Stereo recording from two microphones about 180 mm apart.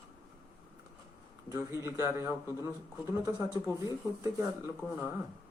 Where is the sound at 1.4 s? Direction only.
15° right (ahead or behind).